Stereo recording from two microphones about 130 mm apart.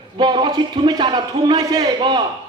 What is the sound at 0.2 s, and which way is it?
Speech, 35° right (ahead or behind).